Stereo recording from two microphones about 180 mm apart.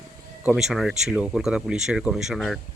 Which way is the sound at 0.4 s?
Centre (ahead or behind).